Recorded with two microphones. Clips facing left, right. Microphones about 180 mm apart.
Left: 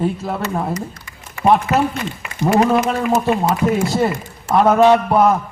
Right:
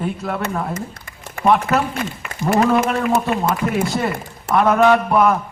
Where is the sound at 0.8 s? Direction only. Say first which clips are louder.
Left 1 dB; 55° right (ahead or behind).